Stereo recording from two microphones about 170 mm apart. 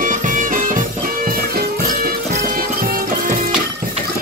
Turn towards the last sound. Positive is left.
turn(degrees=-55)  # may be behind; listen again after turning